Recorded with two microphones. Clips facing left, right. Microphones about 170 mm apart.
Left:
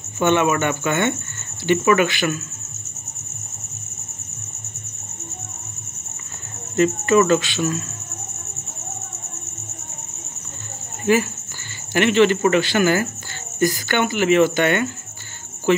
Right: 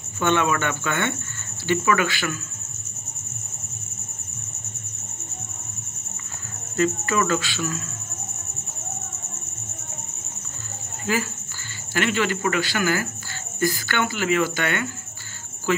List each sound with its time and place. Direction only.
0.2 s speech: 15° left (ahead or behind)
6.8 s speech: 20° left (ahead or behind)
11.9 s speech: 20° left (ahead or behind)